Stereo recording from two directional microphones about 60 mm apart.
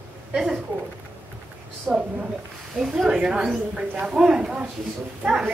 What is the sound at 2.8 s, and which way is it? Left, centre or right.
A woman's voice, centre.